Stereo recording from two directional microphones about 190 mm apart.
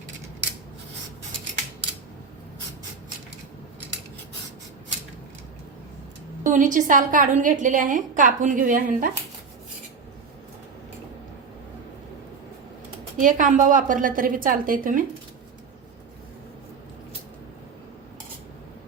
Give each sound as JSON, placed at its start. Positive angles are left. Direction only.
{"t": 6.4, "sound": "a woman's voice", "side_deg": -40}
{"t": 13.1, "sound": "a woman's voice", "side_deg": -40}